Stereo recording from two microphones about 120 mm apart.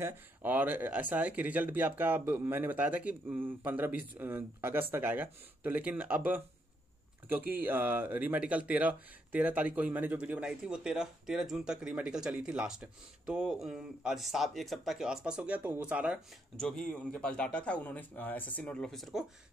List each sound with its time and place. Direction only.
0.0 s speech: 15° right (ahead or behind)
16.5 s speech: 5° left (ahead or behind)